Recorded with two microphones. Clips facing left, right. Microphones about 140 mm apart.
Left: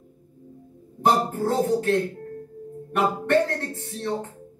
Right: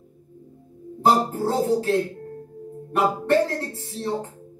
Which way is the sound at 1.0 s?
35° right (ahead or behind).